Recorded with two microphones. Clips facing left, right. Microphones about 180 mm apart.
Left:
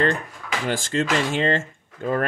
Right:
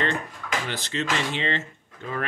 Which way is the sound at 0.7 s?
45° left (ahead or behind).